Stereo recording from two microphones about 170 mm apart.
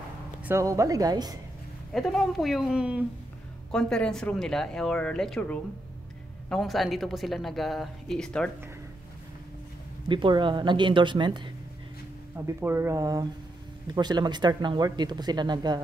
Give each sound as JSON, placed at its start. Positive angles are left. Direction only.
{"t": 0.4, "sound": "speech", "side_deg": -15}
{"t": 1.9, "sound": "a woman's voice", "side_deg": 0}
{"t": 3.7, "sound": "a woman's voice", "side_deg": 5}
{"t": 10.0, "sound": "speech", "side_deg": -25}
{"t": 12.4, "sound": "speech", "side_deg": -15}